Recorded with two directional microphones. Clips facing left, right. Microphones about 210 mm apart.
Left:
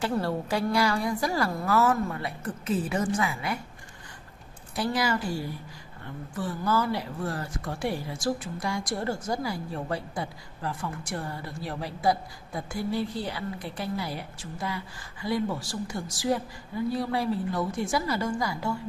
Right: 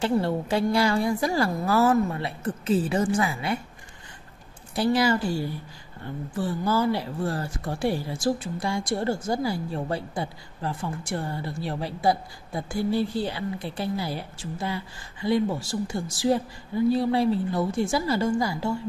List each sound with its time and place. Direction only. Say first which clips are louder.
0.2 s speech: right 3 dB; 25° right (ahead or behind)
4.7 s speech: right 5 dB; 30° right (ahead or behind)